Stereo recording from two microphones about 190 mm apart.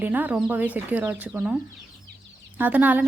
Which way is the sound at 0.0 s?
10° right (ahead or behind).